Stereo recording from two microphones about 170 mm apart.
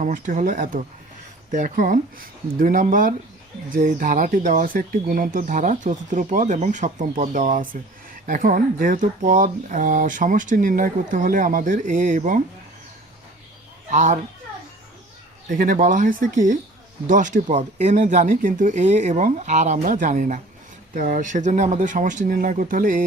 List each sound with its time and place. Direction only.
0.0 s speech: 50° right (ahead or behind)
13.9 s speech: 45° right (ahead or behind)
15.4 s speech: 50° right (ahead or behind)